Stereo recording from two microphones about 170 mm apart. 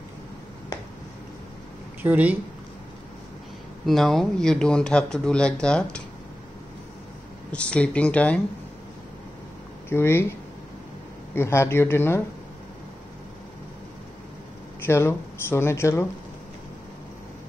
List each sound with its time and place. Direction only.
2.0 s speech: 10° right (ahead or behind)
3.8 s speech: centre (ahead or behind)
7.5 s speech: 5° left (ahead or behind)
9.8 s speech: 15° left (ahead or behind)
11.3 s speech: 15° left (ahead or behind)
14.9 s speech: 15° left (ahead or behind)